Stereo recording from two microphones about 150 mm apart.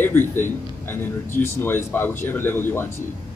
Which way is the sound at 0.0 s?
15° left (ahead or behind).